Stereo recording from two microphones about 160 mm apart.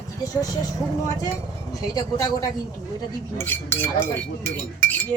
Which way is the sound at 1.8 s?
25° left (ahead or behind).